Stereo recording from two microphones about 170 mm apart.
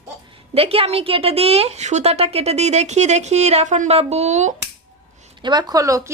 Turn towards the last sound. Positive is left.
turn(degrees=-20)  # may be behind; listen again after turning